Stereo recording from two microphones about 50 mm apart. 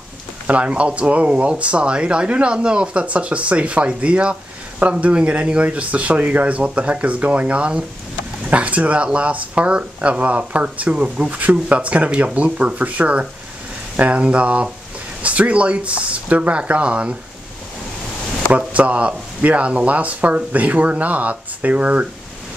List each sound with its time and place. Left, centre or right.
0.5 s speech: right
18.5 s speech: right